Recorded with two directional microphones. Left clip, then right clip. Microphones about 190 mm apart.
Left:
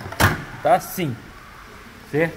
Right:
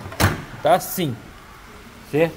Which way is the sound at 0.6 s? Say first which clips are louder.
Even; 15° right (ahead or behind).